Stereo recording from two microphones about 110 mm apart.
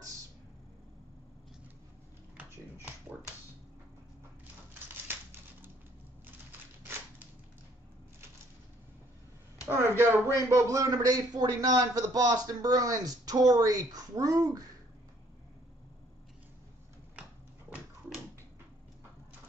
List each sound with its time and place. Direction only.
2.3 s dog: 15° right (ahead or behind)
5.0 s typewriter: 20° right (ahead or behind)
9.7 s a man's voice: 20° right (ahead or behind)